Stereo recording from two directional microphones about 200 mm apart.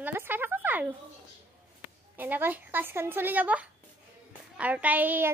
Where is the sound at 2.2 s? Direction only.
10° right (ahead or behind).